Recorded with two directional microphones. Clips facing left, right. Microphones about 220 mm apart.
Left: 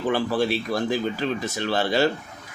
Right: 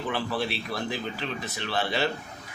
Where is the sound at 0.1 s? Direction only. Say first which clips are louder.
Left 8 dB; 45° left (ahead or behind).